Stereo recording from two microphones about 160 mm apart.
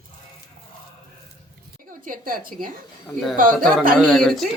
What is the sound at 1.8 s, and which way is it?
Speech, 60° right (ahead or behind).